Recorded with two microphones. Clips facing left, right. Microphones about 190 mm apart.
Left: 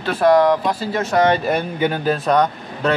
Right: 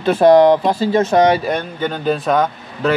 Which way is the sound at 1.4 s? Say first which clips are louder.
Left 1 dB; 5° left (ahead or behind).